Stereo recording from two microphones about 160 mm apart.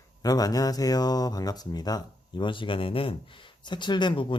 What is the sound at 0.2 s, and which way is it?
Speech, 25° left (ahead or behind).